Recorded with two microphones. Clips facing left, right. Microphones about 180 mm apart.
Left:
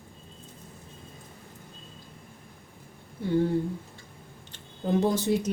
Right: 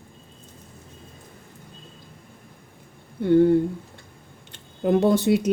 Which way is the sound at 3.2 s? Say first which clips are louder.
Right 9 dB; 60° right (ahead or behind).